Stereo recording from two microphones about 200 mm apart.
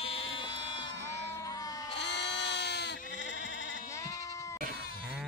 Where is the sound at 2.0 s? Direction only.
60° left (ahead or behind).